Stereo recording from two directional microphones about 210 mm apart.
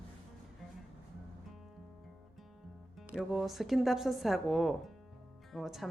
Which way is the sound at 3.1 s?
Centre (ahead or behind).